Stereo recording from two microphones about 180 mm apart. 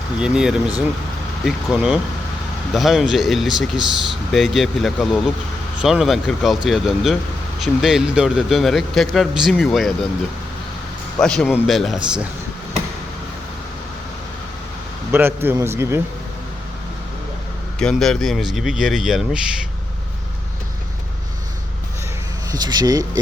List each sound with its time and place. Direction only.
0.2 s speech: 5° right (ahead or behind)
11.2 s speech: 5° left (ahead or behind)
15.1 s speech: 10° right (ahead or behind)
17.7 s speech: 5° left (ahead or behind)
22.5 s speech: 20° right (ahead or behind)